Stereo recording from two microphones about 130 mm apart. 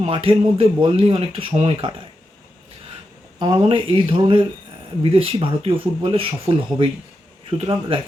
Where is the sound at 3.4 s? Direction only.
30° right (ahead or behind).